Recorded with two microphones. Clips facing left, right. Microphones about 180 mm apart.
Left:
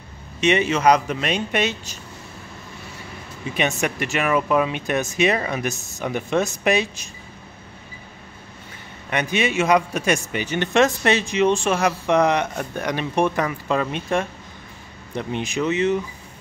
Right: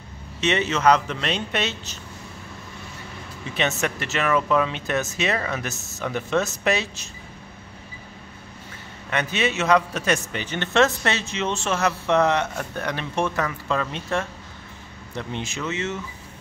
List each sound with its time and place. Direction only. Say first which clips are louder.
0.4 s a man's voice: left 3 dB; 15° left (ahead or behind)
3.5 s a man's voice: left 2 dB; 15° left (ahead or behind)
9.1 s a man's voice: left 3 dB; 15° left (ahead or behind)